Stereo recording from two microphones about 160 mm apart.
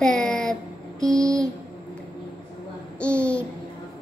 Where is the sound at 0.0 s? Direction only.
5° left (ahead or behind).